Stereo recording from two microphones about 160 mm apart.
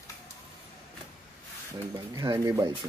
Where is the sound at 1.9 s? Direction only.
25° right (ahead or behind).